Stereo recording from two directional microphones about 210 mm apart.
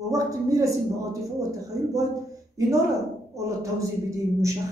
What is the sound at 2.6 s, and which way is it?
A woman's voice, 15° right (ahead or behind).